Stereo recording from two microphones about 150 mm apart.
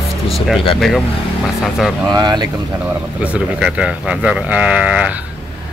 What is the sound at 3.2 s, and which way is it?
Speech, 5° right (ahead or behind).